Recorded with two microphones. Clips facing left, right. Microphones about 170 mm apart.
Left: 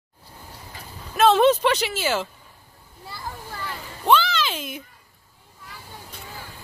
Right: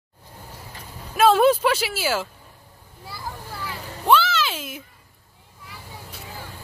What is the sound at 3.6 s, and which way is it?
Children playing, 5° right (ahead or behind).